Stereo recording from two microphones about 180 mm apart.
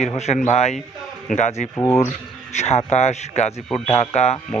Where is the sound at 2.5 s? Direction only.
35° left (ahead or behind).